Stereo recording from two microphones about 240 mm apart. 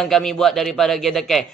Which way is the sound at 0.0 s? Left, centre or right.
Centre.